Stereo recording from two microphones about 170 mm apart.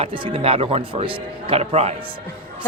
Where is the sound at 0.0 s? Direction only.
35° right (ahead or behind).